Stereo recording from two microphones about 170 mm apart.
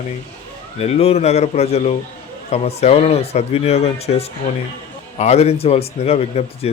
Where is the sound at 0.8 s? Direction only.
35° left (ahead or behind).